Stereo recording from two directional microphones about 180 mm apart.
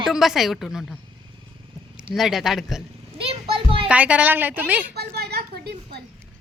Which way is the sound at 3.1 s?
30° right (ahead or behind).